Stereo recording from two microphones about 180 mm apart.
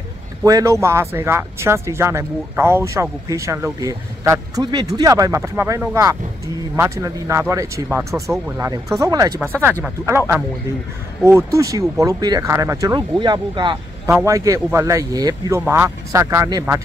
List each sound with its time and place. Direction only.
0.4 s speech: 20° right (ahead or behind)
14.0 s speech: 15° right (ahead or behind)